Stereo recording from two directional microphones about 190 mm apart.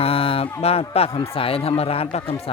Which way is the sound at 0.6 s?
30° left (ahead or behind).